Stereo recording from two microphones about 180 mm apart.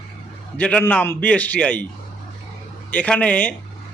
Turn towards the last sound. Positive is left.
turn(degrees=10)  # may be behind; listen again after turning